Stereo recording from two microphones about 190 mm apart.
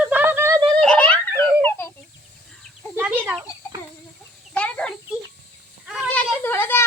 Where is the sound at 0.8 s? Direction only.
5° left (ahead or behind).